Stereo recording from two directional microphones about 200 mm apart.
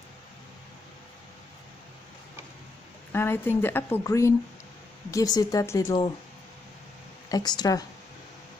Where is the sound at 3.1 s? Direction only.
10° left (ahead or behind).